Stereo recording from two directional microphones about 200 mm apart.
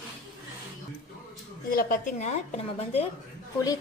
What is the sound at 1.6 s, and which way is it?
A woman's voice, 45° left (ahead or behind).